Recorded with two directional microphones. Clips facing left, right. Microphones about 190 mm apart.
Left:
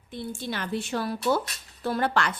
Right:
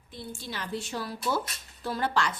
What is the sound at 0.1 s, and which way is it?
A woman's voice, 60° left (ahead or behind).